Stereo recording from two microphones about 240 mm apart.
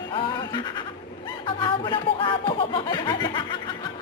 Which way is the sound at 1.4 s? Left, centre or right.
Left.